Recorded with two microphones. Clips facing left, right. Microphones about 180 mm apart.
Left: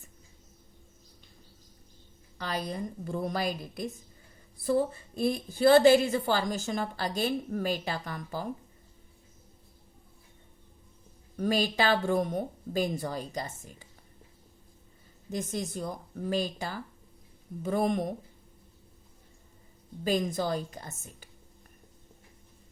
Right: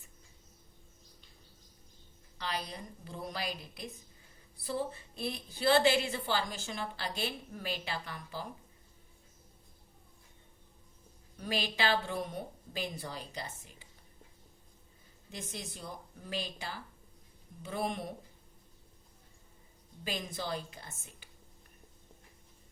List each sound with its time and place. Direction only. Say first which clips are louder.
2.4 s a woman's voice: left 6 dB; 45° left (ahead or behind)
11.3 s a woman's voice: left 8 dB; 45° left (ahead or behind)
15.3 s a woman's voice: left 11 dB; 45° left (ahead or behind)
20.1 s a woman's voice: left 9 dB; 45° left (ahead or behind)